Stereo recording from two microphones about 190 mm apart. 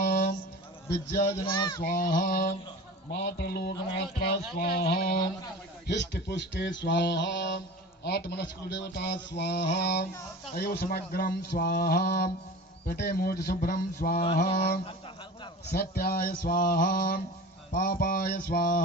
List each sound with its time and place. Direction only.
0.0 s music: 55° left (ahead or behind)
0.9 s speech: 60° left (ahead or behind)
1.5 s speech: 25° left (ahead or behind)
1.8 s speech: 45° left (ahead or behind)
3.1 s speech: 60° left (ahead or behind)
4.5 s speech: 55° left (ahead or behind)
15.7 s speech: 55° left (ahead or behind)